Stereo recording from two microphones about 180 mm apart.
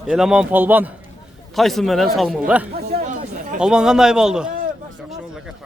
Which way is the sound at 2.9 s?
45° right (ahead or behind).